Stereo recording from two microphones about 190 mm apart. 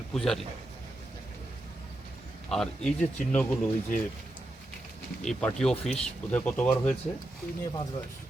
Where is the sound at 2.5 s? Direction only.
5° left (ahead or behind).